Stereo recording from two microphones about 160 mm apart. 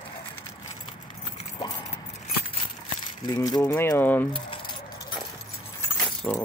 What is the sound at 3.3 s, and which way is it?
Keys jangling, 25° left (ahead or behind).